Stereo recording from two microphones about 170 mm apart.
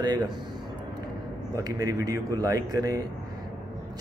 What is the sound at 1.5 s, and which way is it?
Speech, 20° right (ahead or behind).